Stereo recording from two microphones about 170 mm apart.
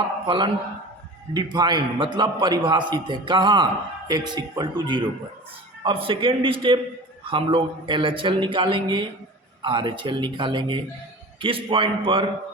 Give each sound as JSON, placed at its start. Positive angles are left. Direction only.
{"t": 0.3, "sound": "a man's voice", "side_deg": -30}